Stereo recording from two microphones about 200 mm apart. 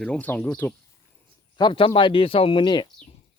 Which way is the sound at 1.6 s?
25° left (ahead or behind).